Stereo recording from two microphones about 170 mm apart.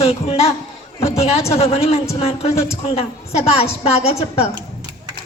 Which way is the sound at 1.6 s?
35° left (ahead or behind).